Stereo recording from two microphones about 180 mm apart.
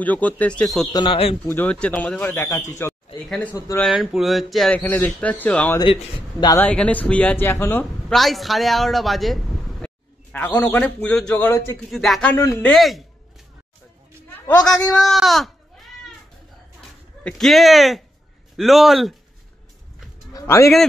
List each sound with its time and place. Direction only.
0.0 s speech: 10° left (ahead or behind)
0.9 s speech: 30° left (ahead or behind)
1.5 s speech: 10° left (ahead or behind)
2.9 s a sound: centre (ahead or behind)
3.5 s speech: 20° left (ahead or behind)
3.8 s speech: centre (ahead or behind)
5.9 s a man's voice: 30° left (ahead or behind)
6.5 s speech: 10° left (ahead or behind)
8.1 s speech: centre (ahead or behind)
11.9 s speech: centre (ahead or behind)
12.7 s speech: centre (ahead or behind)
14.6 s speech: 5° left (ahead or behind)
17.2 s speech: 5° left (ahead or behind)
20.3 s a man's voice: 15° left (ahead or behind)